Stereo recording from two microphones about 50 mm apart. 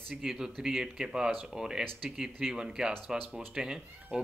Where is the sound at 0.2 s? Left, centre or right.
Centre.